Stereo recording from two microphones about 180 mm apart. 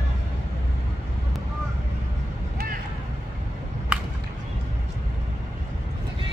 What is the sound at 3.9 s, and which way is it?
Whip, 5° right (ahead or behind).